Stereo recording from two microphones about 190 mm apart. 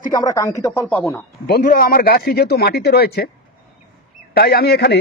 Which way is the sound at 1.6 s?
45° left (ahead or behind).